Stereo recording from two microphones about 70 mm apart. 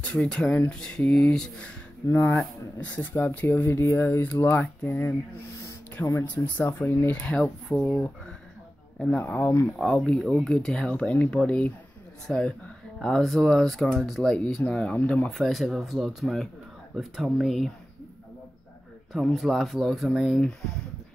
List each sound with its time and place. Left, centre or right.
0.0 s speech: centre
2.0 s speech: left
2.8 s speech: left
6.2 s speech: left
7.1 s speech: centre
7.7 s speech: centre
9.2 s speech: left
9.8 s speech: centre
13.0 s speech: centre
14.6 s speech: centre
15.3 s speech: centre
19.3 s speech: centre